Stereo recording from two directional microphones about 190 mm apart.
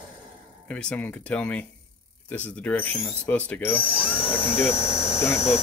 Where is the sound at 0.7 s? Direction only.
5° left (ahead or behind).